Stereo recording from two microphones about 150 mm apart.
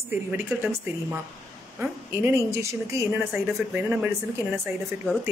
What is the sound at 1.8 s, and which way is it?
A woman's voice, 15° right (ahead or behind).